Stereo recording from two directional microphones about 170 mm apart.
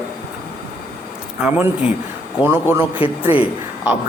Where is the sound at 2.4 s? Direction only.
10° right (ahead or behind).